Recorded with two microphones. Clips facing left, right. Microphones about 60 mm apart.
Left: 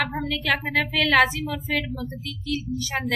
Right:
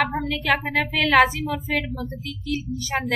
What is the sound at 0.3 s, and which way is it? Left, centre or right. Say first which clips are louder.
A woman's voice: right 2 dB; centre.